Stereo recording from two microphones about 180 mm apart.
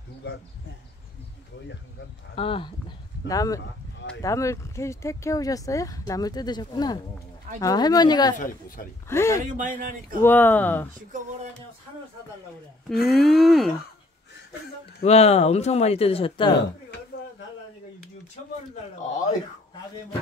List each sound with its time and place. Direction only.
2.3 s speech: 30° left (ahead or behind)
3.3 s speech: 20° left (ahead or behind)
8.4 s a woman's voice: 50° left (ahead or behind)
9.1 s speech: 15° left (ahead or behind)
9.6 s speech: 50° right (ahead or behind)
10.2 s speech: 10° left (ahead or behind)
12.9 s speech: centre (ahead or behind)
15.0 s speech: 35° left (ahead or behind)